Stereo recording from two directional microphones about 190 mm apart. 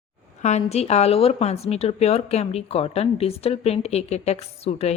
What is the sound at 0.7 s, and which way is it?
Speech, 35° left (ahead or behind).